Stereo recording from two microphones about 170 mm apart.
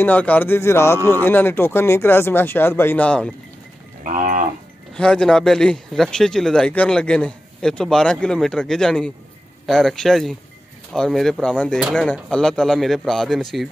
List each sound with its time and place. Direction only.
0.0 s speech: 10° left (ahead or behind)
4.0 s livestock: 50° right (ahead or behind)
4.9 s speech: 5° left (ahead or behind)